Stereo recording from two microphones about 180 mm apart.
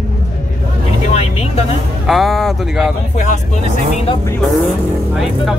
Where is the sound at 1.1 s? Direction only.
35° left (ahead or behind).